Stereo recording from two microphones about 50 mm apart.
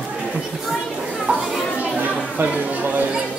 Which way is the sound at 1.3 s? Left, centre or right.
Centre.